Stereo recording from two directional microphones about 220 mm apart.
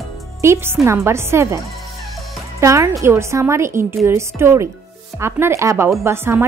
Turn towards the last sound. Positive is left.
turn(degrees=-10)  # may be behind; listen again after turning